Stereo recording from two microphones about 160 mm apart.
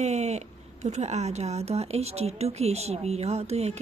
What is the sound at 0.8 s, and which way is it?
Speech, 45° right (ahead or behind).